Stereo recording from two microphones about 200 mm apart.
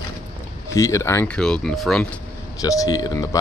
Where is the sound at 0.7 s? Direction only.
15° left (ahead or behind).